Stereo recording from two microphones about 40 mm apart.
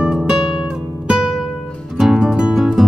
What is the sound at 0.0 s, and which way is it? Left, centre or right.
Music, centre.